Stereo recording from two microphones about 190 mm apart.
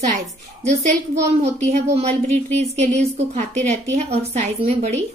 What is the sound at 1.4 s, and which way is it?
A woman's voice, 35° right (ahead or behind).